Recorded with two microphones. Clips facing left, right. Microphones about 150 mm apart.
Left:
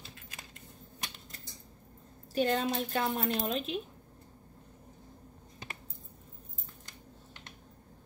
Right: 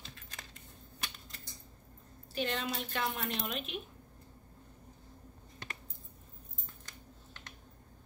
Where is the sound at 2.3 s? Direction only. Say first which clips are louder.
Left 7 dB; 40° left (ahead or behind).